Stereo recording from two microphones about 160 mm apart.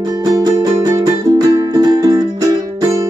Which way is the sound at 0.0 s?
25° right (ahead or behind).